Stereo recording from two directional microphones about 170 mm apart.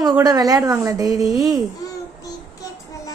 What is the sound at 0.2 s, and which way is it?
A woman's voice, 20° right (ahead or behind).